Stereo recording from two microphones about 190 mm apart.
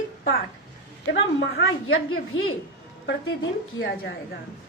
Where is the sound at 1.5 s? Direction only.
90° left.